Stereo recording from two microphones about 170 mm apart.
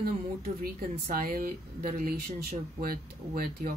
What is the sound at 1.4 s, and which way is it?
Speech, 55° right (ahead or behind).